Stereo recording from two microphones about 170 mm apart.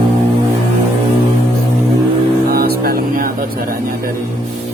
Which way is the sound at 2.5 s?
65° right (ahead or behind).